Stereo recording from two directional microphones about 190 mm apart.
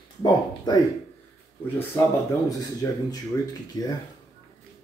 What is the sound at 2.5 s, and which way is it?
Speech, 20° left (ahead or behind).